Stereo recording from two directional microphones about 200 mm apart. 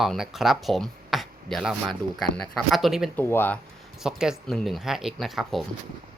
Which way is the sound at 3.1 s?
10° left (ahead or behind).